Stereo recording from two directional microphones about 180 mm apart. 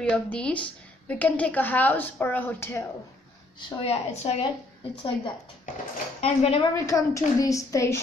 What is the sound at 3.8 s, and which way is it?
Speech, 35° left (ahead or behind).